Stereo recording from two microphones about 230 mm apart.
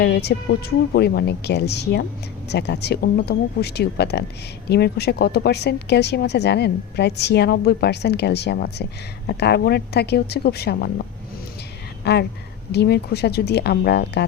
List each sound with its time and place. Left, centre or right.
0.0 s speech: left
12.1 s speech: left